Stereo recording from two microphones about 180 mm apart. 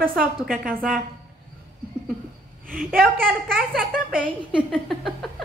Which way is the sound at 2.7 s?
50° right (ahead or behind).